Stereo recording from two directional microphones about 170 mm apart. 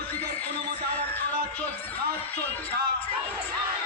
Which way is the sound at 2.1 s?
65° right (ahead or behind).